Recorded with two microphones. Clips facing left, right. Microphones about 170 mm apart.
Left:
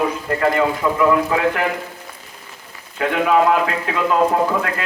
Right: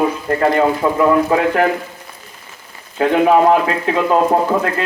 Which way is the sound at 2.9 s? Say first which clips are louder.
Right 4 dB; 30° right (ahead or behind).